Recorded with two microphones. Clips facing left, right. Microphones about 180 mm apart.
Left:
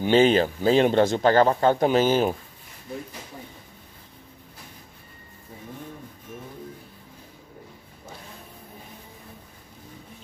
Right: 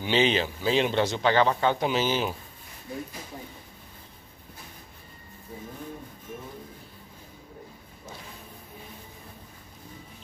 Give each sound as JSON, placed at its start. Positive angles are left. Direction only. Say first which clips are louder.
{"t": 0.0, "sound": "speech", "louder": "left 6 dB", "side_deg": 45}